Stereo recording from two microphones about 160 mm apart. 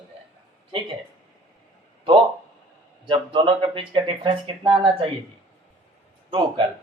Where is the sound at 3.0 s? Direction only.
30° right (ahead or behind).